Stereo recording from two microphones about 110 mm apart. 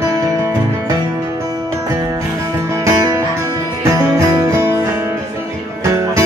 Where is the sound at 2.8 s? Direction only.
30° right (ahead or behind).